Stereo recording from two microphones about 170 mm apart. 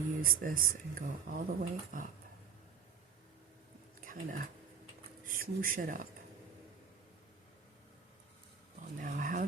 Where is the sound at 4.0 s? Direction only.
55° right (ahead or behind).